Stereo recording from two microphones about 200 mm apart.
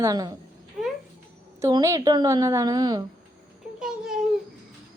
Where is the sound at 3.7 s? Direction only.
5° right (ahead or behind).